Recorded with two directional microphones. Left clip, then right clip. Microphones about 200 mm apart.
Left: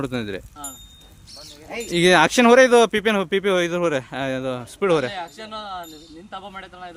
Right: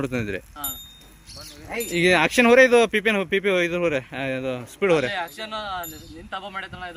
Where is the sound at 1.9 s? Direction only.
20° left (ahead or behind).